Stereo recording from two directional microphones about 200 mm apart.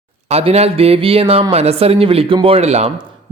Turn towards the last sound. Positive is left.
turn(degrees=-30)  # may be behind; listen again after turning